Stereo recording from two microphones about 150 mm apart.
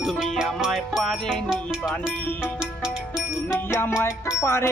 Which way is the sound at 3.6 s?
15° left (ahead or behind).